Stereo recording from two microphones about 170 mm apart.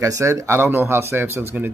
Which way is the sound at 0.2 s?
15° right (ahead or behind).